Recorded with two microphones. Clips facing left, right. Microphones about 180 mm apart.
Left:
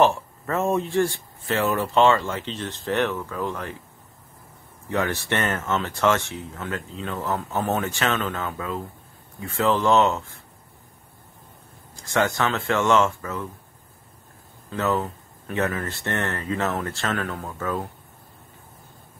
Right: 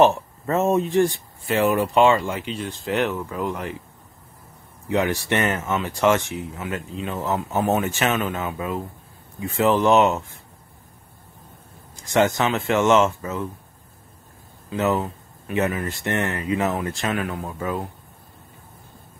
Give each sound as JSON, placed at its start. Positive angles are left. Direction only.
{"t": 0.0, "sound": "speech", "side_deg": -20}
{"t": 4.8, "sound": "speech", "side_deg": -15}
{"t": 11.9, "sound": "speech", "side_deg": -20}
{"t": 14.7, "sound": "speech", "side_deg": -15}